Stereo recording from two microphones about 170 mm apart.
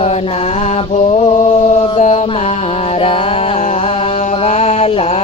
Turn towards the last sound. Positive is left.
turn(degrees=35)  # may be behind; listen again after turning